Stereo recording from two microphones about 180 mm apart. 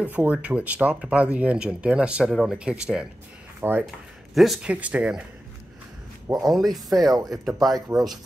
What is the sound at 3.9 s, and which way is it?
Speech, centre (ahead or behind).